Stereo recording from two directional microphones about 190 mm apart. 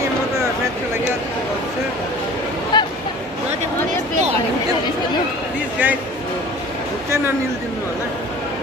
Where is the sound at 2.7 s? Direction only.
25° left (ahead or behind).